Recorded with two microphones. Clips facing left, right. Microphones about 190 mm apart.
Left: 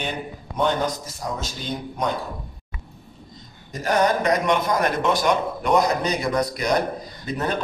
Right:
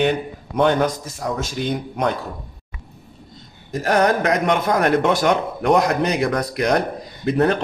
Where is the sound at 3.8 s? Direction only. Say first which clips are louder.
Right 2 dB; 65° right (ahead or behind).